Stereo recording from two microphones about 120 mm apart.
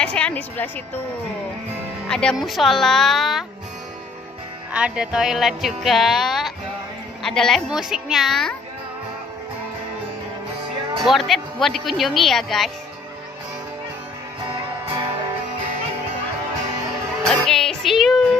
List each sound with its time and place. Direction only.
0.0 s a woman's voice: 10° left (ahead or behind)
2.0 s speech: 5° left (ahead or behind)
4.7 s speech: 10° right (ahead or behind)
11.1 s speech: centre (ahead or behind)
14.5 s music: 40° right (ahead or behind)
17.3 s music: 5° left (ahead or behind)